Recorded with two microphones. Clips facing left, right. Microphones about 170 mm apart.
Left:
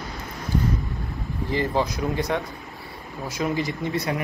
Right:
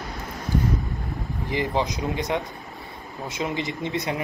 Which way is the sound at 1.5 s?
15° right (ahead or behind).